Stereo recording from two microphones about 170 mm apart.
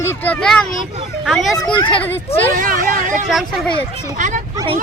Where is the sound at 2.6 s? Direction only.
55° right (ahead or behind).